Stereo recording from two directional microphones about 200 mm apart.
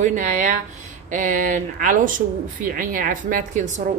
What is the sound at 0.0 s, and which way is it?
A woman's voice, 40° right (ahead or behind).